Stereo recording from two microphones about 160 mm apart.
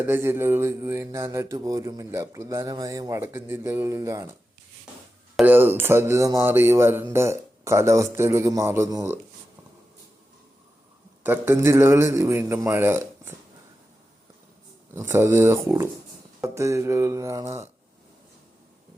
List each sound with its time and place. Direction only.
0.0 s speech: 15° right (ahead or behind)
5.4 s speech: 10° right (ahead or behind)
11.2 s speech: 15° right (ahead or behind)
14.9 s speech: 15° right (ahead or behind)